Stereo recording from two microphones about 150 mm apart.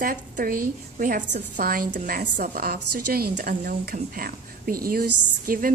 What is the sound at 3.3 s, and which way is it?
A woman's voice, 75° right (ahead or behind).